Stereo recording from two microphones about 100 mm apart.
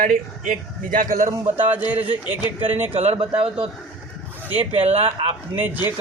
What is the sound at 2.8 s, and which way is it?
Speech, 90° right.